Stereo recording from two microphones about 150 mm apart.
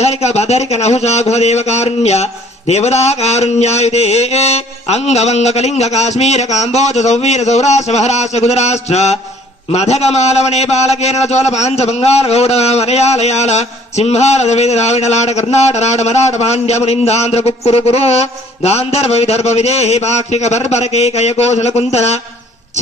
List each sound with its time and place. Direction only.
0.0 s a man's voice: 45° left (ahead or behind)